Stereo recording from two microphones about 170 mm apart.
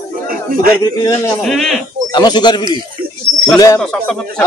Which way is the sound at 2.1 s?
25° left (ahead or behind).